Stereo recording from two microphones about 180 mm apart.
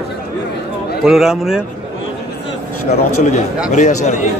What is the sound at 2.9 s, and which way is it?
Speech, 40° left (ahead or behind).